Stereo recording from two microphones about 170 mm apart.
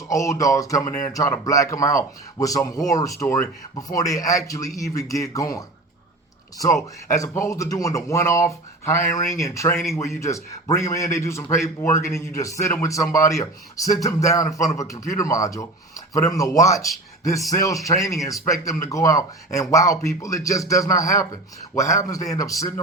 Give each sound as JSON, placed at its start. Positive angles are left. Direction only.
{"t": 0.1, "sound": "a man's voice", "side_deg": 20}
{"t": 7.2, "sound": "speech", "side_deg": 20}
{"t": 13.1, "sound": "speech", "side_deg": 50}
{"t": 13.3, "sound": "a man's voice", "side_deg": 20}